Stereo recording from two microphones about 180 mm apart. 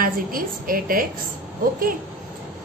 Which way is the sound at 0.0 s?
50° right (ahead or behind).